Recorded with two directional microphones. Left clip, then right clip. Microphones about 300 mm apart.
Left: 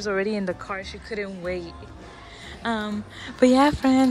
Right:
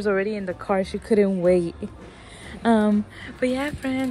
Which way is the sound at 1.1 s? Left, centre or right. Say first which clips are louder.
Right 11 dB; centre.